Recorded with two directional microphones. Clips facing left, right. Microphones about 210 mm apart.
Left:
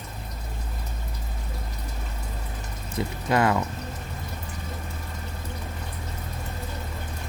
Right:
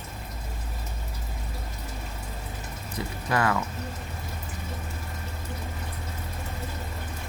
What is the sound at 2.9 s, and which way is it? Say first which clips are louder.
Speech: left 4 dB; 25° left (ahead or behind).